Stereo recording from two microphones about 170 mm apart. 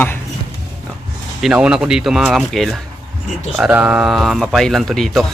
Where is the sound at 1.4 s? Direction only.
5° right (ahead or behind).